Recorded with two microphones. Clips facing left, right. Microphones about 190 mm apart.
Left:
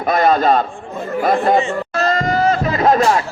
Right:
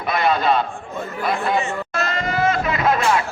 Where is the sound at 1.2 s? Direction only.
45° left (ahead or behind).